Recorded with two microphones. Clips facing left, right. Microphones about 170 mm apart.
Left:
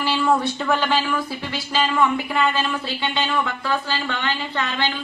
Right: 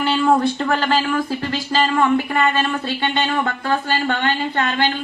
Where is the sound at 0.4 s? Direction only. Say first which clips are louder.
Right 3 dB; 50° right (ahead or behind).